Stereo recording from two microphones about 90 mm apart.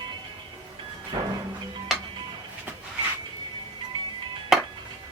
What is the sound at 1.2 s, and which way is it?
Music, 45° right (ahead or behind).